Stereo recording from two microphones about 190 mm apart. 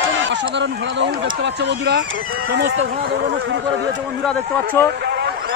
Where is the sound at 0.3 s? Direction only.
65° right (ahead or behind).